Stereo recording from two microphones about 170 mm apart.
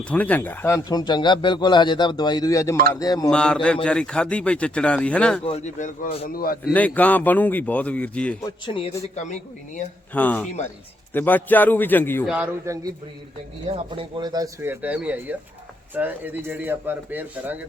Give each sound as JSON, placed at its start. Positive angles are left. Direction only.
{"t": 0.1, "sound": "a man's voice", "side_deg": 10}
{"t": 3.2, "sound": "speech", "side_deg": 5}
{"t": 5.5, "sound": "a man's voice", "side_deg": 40}
{"t": 6.2, "sound": "a man's voice", "side_deg": 60}
{"t": 6.7, "sound": "speech", "side_deg": 10}
{"t": 8.6, "sound": "a man's voice", "side_deg": 30}
{"t": 9.1, "sound": "a man's voice", "side_deg": 45}
{"t": 10.2, "sound": "speech", "side_deg": 10}
{"t": 12.6, "sound": "speech", "side_deg": -20}
{"t": 13.7, "sound": "speech", "side_deg": -35}